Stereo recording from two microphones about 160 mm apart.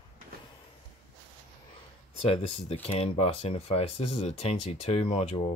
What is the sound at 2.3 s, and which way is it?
Speech, 35° left (ahead or behind).